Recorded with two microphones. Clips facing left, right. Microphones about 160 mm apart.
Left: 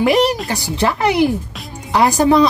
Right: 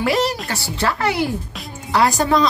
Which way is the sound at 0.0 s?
15° left (ahead or behind).